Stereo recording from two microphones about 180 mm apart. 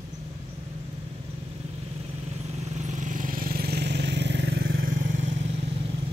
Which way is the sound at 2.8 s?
45° right (ahead or behind).